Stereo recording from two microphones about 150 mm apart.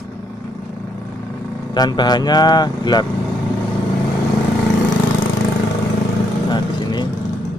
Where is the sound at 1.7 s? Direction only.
25° left (ahead or behind).